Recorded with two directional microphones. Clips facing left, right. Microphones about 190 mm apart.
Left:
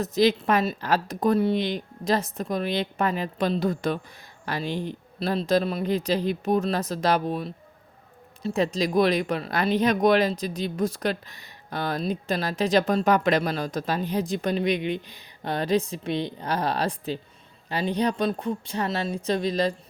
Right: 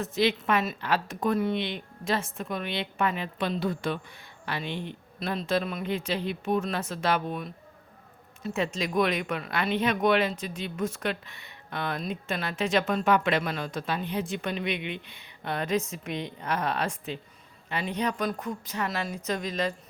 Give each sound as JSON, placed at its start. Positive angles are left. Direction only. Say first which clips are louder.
{"t": 0.0, "sound": "speech", "louder": "left 5 dB", "side_deg": 40}